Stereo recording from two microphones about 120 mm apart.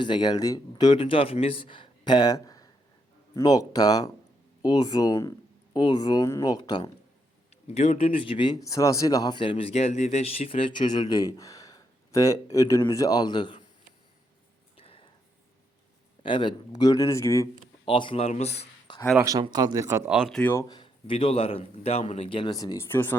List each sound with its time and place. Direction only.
0.0 s speech: 40° left (ahead or behind)
0.9 s speech: 50° left (ahead or behind)
7.7 s speech: 65° left (ahead or behind); by 13.6 s 40° left (ahead or behind)
14.8 s a sound: 50° left (ahead or behind)
16.2 s speech: 40° left (ahead or behind); by 17.5 s 25° left (ahead or behind)
17.8 s speech: 45° left (ahead or behind)
18.3 s speech: 65° left (ahead or behind)
19.2 s speech: 30° right (ahead or behind)
20.1 s speech: 5° right (ahead or behind)
20.4 s speech: 20° left (ahead or behind)
20.7 s speech: 40° left (ahead or behind)
22.5 s speech: 30° left (ahead or behind)